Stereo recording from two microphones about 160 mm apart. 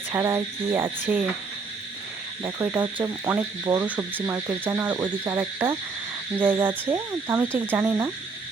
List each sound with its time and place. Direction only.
0.1 s speech: 15° right (ahead or behind)
2.4 s speech: 20° right (ahead or behind)